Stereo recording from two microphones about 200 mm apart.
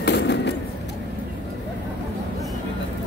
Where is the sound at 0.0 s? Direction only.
60° left (ahead or behind).